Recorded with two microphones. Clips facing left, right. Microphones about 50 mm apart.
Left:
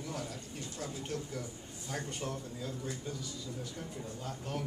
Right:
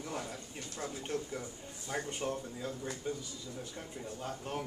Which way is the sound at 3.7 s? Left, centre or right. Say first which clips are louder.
Even; right.